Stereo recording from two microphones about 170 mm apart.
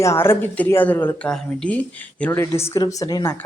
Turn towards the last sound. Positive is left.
turn(degrees=20)  # may be behind; listen again after turning